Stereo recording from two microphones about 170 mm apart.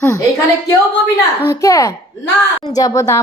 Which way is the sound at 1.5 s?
20° left (ahead or behind).